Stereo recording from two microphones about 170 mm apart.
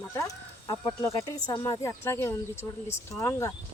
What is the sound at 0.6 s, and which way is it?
Speech, 20° left (ahead or behind).